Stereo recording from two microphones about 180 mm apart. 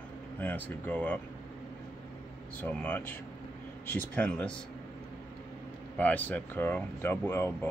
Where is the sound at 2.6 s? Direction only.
10° left (ahead or behind).